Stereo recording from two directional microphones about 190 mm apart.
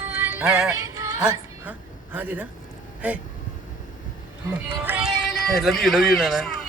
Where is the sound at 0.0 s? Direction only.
10° right (ahead or behind).